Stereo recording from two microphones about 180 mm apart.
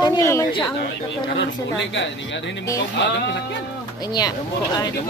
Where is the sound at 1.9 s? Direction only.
85° left.